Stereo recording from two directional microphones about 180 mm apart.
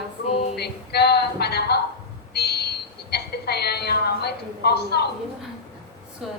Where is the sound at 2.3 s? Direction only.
65° left (ahead or behind).